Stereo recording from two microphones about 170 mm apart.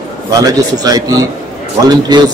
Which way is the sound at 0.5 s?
20° right (ahead or behind).